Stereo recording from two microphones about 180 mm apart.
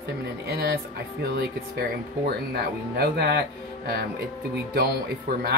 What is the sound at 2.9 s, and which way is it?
Speech, 65° right (ahead or behind).